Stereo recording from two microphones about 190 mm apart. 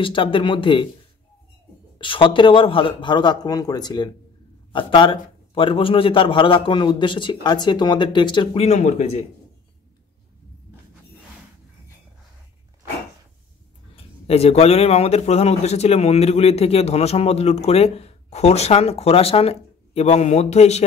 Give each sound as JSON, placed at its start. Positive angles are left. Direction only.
{"t": 0.0, "sound": "a man's voice", "side_deg": 25}
{"t": 2.0, "sound": "a man's voice", "side_deg": 25}
{"t": 13.9, "sound": "a man's voice", "side_deg": 30}